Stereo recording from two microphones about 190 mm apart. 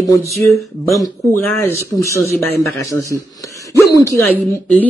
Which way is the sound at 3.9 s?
15° left (ahead or behind).